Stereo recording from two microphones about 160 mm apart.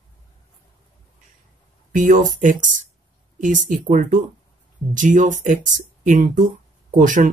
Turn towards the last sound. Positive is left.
turn(degrees=-55)  # may be behind; listen again after turning